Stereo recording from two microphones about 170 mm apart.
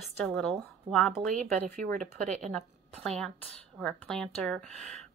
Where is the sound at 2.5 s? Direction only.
5° left (ahead or behind).